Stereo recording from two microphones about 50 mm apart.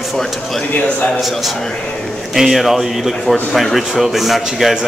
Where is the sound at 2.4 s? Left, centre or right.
Centre.